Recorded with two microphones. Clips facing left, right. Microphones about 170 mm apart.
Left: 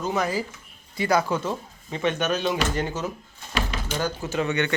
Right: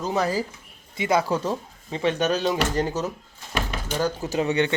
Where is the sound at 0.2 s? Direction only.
35° right (ahead or behind).